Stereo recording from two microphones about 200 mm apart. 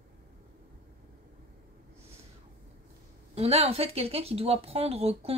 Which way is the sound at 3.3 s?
30° right (ahead or behind).